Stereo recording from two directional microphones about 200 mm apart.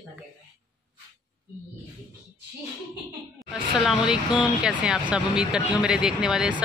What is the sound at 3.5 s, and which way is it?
Speech, centre (ahead or behind).